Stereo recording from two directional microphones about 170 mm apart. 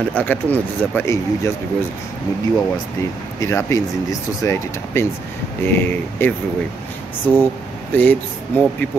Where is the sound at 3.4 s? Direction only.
15° left (ahead or behind).